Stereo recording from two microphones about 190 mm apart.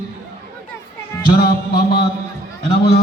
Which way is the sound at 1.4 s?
55° left (ahead or behind).